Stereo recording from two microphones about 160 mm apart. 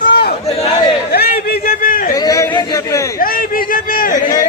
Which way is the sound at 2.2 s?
20° left (ahead or behind).